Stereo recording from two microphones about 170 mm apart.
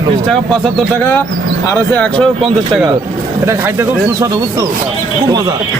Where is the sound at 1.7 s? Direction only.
5° left (ahead or behind).